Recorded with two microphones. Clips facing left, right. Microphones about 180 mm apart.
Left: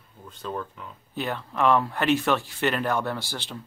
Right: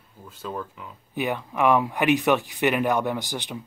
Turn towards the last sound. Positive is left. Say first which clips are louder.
# right 3 dB
turn(degrees=-15)  # may be behind; listen again after turning